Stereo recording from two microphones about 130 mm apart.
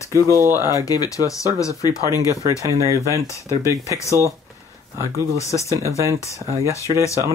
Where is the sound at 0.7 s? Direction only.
30° left (ahead or behind).